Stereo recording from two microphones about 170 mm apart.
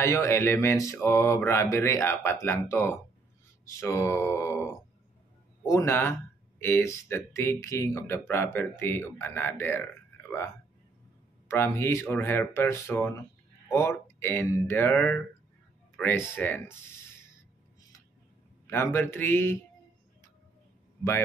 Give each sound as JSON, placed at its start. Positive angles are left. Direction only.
{"t": 0.0, "sound": "speech", "side_deg": 15}
{"t": 5.7, "sound": "speech", "side_deg": 15}
{"t": 11.4, "sound": "speech", "side_deg": 15}
{"t": 18.7, "sound": "speech", "side_deg": 15}